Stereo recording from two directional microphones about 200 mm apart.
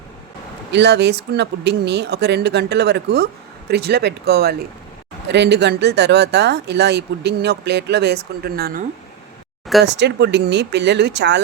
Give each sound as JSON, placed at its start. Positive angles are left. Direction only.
{"t": 0.7, "sound": "speech", "side_deg": -60}
{"t": 9.8, "sound": "speech", "side_deg": -60}